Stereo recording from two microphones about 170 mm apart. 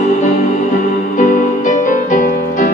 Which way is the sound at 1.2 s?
50° left (ahead or behind).